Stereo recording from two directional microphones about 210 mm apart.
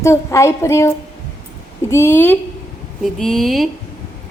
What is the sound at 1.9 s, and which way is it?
Speech, 10° left (ahead or behind).